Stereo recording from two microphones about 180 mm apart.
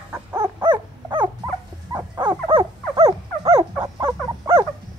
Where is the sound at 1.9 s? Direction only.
25° right (ahead or behind).